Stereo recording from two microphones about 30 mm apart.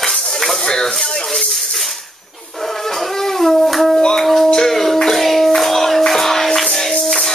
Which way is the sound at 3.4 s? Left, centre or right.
Centre.